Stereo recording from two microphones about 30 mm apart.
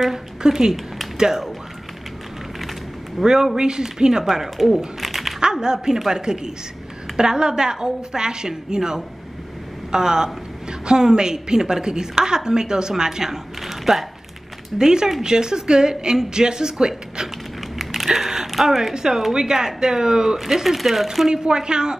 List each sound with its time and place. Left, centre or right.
0.1 s a woman's voice: centre
1.1 s a sound: right
3.2 s speech: centre
3.5 s a woman's voice: right
4.2 s speech: centre
5.0 s dog: centre
5.4 s a woman's voice: right
14.8 s a woman's voice: right
17.7 s a sound: centre
18.5 s a woman's voice: centre
21.3 s a woman's voice: right